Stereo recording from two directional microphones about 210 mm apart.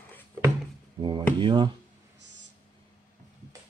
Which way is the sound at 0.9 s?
20° right (ahead or behind).